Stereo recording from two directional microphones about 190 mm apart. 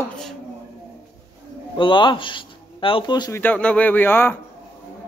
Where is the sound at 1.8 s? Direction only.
25° left (ahead or behind).